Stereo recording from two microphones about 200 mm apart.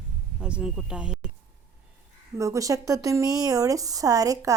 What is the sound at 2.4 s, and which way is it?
A woman's voice, 15° right (ahead or behind).